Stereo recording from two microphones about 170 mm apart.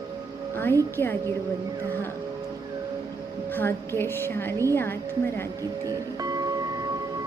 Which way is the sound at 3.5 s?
15° left (ahead or behind).